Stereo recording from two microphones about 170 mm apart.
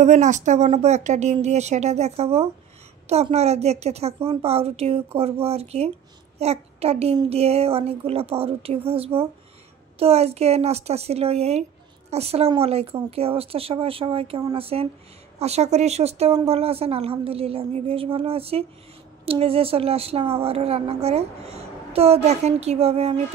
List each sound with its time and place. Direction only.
0.0 s a woman's voice: 45° right (ahead or behind)